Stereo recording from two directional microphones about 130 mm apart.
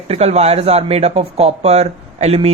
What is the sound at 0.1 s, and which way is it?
Speech, 55° right (ahead or behind).